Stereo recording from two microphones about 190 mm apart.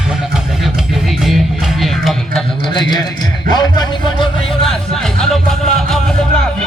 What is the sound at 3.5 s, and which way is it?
Speech, 20° left (ahead or behind).